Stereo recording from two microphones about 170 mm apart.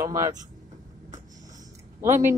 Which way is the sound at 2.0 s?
15° right (ahead or behind).